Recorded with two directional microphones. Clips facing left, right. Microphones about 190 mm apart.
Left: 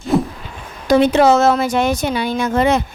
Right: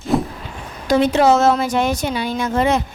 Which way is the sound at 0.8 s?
70° left (ahead or behind).